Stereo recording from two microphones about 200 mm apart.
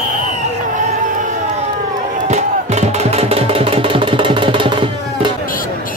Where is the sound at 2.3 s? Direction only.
35° right (ahead or behind).